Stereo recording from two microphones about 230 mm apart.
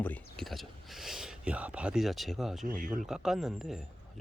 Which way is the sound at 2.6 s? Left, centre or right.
Right.